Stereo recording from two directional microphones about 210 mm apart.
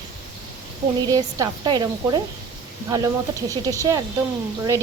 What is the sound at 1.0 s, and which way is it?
Speech, 15° right (ahead or behind).